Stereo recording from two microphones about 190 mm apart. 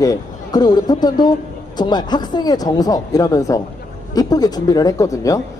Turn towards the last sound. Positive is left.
turn(degrees=15)  # may be behind; listen again after turning